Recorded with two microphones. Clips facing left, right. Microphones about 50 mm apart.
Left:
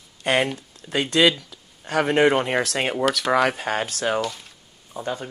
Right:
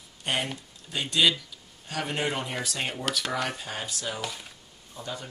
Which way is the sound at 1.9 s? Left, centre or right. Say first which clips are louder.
Left 12 dB; left.